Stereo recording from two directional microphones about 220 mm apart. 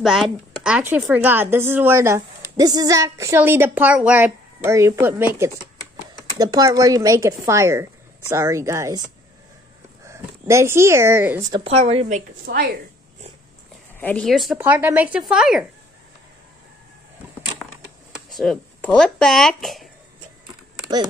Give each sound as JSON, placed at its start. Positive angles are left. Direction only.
{"t": 0.0, "sound": "speech", "side_deg": 0}
{"t": 6.3, "sound": "speech", "side_deg": -15}
{"t": 10.0, "sound": "speech", "side_deg": -15}
{"t": 11.5, "sound": "a woman's voice", "side_deg": -25}
{"t": 13.9, "sound": "speech", "side_deg": 5}
{"t": 18.3, "sound": "speech", "side_deg": 0}